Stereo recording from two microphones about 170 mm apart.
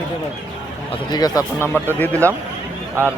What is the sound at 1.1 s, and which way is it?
Speech, 25° left (ahead or behind).